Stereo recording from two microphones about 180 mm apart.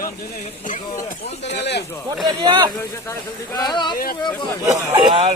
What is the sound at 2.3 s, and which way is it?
Speech, 25° right (ahead or behind).